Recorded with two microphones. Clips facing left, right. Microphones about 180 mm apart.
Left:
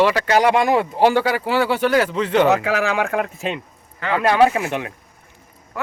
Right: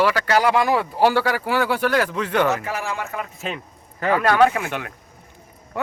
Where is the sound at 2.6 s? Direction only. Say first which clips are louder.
Left 7 dB; 90° left.